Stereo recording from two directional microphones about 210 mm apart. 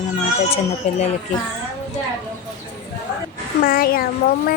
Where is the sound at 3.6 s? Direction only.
45° left (ahead or behind).